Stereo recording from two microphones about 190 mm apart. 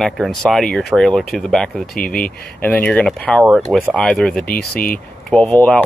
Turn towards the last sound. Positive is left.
turn(degrees=10)  # may be behind; listen again after turning